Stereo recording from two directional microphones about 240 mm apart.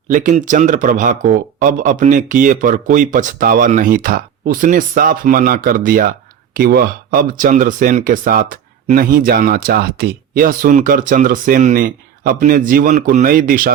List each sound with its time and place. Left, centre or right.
0.1 s speech: right